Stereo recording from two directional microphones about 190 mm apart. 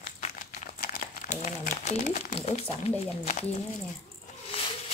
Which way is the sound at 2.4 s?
30° left (ahead or behind).